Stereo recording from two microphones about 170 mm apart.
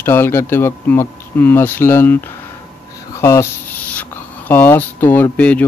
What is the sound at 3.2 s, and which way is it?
Speech, 15° left (ahead or behind).